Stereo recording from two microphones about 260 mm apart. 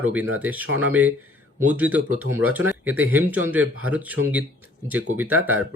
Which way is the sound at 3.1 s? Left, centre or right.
Centre.